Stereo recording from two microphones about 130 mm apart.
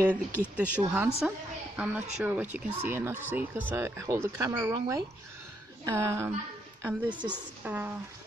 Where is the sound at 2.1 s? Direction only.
15° right (ahead or behind).